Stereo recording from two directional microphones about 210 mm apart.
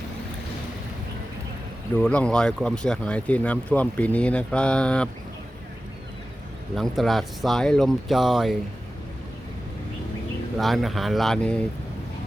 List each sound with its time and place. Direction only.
2.0 s speech: 5° left (ahead or behind)
6.7 s speech: centre (ahead or behind)
10.6 s speech: centre (ahead or behind)